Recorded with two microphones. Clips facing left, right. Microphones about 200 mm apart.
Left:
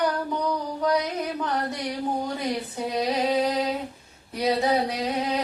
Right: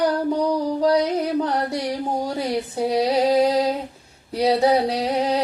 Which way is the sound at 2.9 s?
35° right (ahead or behind).